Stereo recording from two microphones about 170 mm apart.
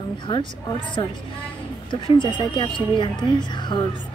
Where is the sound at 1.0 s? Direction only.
30° left (ahead or behind).